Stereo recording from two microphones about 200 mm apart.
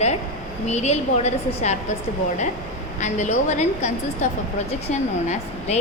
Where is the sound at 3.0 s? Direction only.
35° left (ahead or behind).